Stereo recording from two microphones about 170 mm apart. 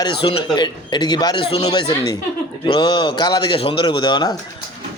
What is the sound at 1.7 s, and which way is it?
A man's voice, 25° left (ahead or behind).